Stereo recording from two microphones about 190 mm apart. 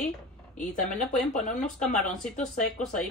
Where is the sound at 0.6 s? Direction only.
45° left (ahead or behind).